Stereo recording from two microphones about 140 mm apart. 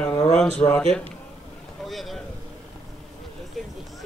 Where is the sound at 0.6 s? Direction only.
45° left (ahead or behind).